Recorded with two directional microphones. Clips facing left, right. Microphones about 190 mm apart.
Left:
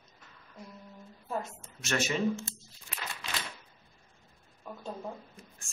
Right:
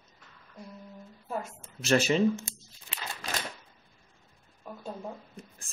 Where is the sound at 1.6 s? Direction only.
30° right (ahead or behind).